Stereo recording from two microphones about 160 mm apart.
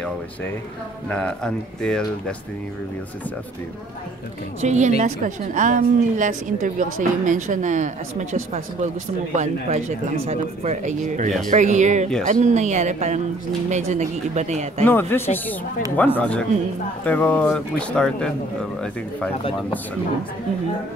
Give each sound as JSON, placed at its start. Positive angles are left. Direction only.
{"t": 1.0, "sound": "speech", "side_deg": 5}
{"t": 4.6, "sound": "a woman's voice", "side_deg": -45}
{"t": 14.9, "sound": "speech", "side_deg": 15}